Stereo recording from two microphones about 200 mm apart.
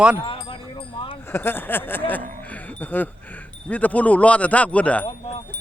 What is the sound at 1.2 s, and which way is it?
Speech, 10° left (ahead or behind).